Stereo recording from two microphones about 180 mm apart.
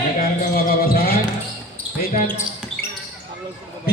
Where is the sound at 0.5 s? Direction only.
55° left (ahead or behind).